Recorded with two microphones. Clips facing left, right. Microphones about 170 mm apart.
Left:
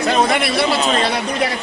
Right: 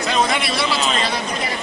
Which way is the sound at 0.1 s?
55° left (ahead or behind).